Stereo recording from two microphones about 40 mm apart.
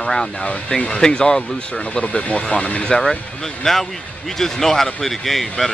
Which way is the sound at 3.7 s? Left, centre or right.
Centre.